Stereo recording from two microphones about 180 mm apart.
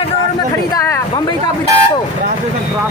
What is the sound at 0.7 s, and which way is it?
Speech, 20° left (ahead or behind).